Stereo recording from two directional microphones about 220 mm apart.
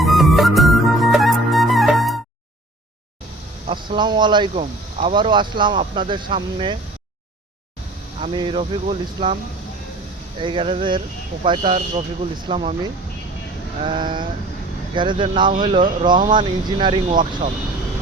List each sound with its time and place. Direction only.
0.0 s music: centre (ahead or behind)
3.7 s speech: 20° right (ahead or behind)
8.2 s speech: 20° right (ahead or behind)
13.8 s speech: 20° right (ahead or behind)